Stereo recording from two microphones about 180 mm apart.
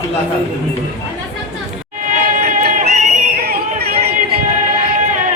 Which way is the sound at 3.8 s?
60° right (ahead or behind).